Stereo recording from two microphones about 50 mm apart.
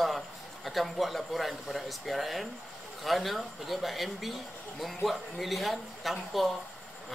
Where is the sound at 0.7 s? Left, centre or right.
Centre.